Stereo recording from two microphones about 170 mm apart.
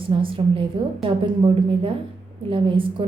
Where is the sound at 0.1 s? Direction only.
30° right (ahead or behind).